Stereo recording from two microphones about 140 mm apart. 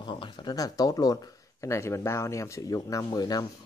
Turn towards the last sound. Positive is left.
turn(degrees=25)  # may be behind; listen again after turning